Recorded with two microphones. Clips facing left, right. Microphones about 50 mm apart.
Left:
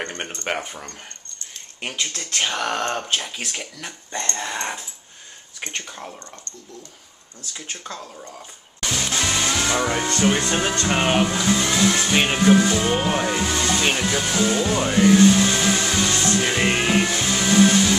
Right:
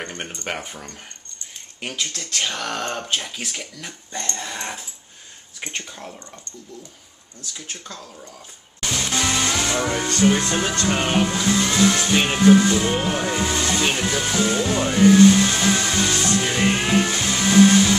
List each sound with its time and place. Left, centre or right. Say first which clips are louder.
0.5 s speech: left 4 dB; centre
2.1 s speech: left 2 dB; left
2.9 s speech: left 1 dB; centre
5.8 s speech: left 1 dB; centre
7.5 s speech: left 3 dB; centre
8.9 s speech: right 1 dB; centre
11.2 s music: even; centre
13.1 s speech: left 1 dB; centre
16.4 s music: even; centre